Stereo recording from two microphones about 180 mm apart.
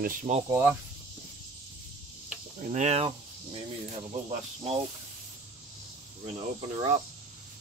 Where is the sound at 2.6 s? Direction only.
40° right (ahead or behind).